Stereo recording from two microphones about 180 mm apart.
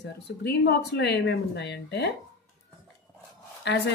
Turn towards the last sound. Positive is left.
turn(degrees=70)  # may be behind; listen again after turning